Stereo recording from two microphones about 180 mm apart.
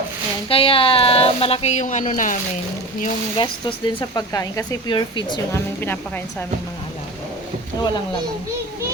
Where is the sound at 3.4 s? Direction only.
25° left (ahead or behind).